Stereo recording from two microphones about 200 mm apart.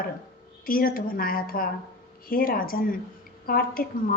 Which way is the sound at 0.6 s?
45° left (ahead or behind).